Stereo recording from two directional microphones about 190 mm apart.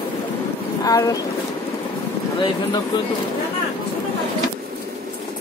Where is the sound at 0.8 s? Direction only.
20° left (ahead or behind).